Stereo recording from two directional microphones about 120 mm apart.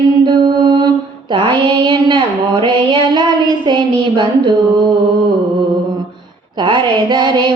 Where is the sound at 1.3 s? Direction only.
40° right (ahead or behind).